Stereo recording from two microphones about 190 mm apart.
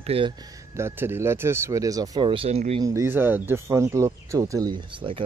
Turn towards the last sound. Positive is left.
turn(degrees=-25)  # may be behind; listen again after turning